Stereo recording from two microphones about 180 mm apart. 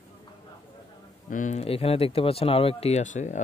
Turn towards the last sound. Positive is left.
turn(degrees=40)  # may be behind; listen again after turning